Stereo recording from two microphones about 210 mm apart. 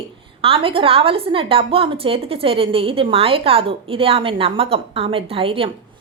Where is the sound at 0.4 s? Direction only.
25° right (ahead or behind).